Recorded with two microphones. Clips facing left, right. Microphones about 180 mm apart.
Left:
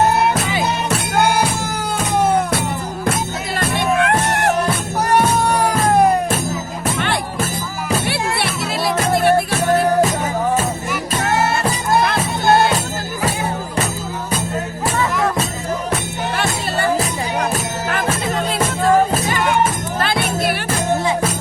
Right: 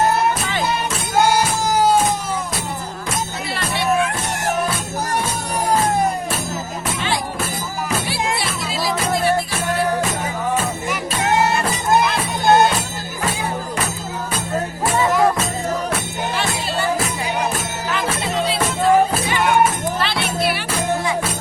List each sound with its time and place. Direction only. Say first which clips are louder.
1.6 s music: right 7 dB; 55° left (ahead or behind)
3.8 s music: left 2 dB; 70° left (ahead or behind)
8.0 s music: left 2 dB; 65° left (ahead or behind)
16.4 s music: left 3 dB; 55° left (ahead or behind)
20.0 s music: left 5 dB; 45° left (ahead or behind)